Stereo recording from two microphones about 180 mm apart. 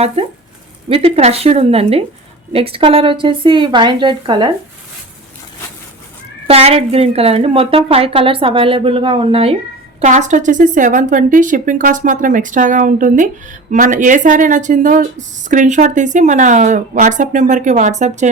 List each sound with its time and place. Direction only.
0.9 s a woman's voice: 30° right (ahead or behind)
6.5 s a woman's voice: 35° right (ahead or behind)